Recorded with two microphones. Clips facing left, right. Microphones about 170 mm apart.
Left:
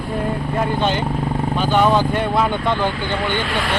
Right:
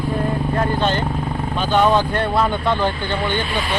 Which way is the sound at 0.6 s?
10° left (ahead or behind).